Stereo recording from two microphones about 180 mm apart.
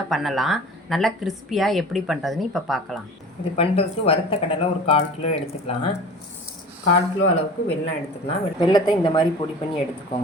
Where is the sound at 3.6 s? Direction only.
30° left (ahead or behind).